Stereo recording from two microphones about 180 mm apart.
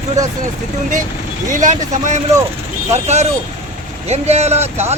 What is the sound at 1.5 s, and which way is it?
Speech, 45° right (ahead or behind).